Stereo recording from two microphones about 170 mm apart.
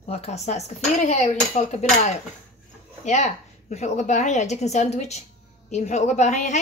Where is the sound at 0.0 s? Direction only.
40° left (ahead or behind).